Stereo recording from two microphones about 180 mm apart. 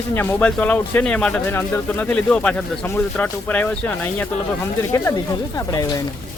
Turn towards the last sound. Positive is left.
turn(degrees=20)  # may be behind; listen again after turning